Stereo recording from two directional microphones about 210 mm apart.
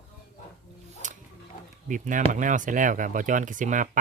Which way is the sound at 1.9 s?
35° right (ahead or behind).